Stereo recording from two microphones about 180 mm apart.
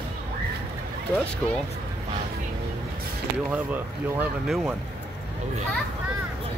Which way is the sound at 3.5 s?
10° right (ahead or behind).